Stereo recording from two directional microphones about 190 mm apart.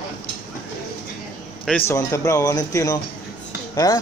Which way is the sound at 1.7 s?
10° left (ahead or behind).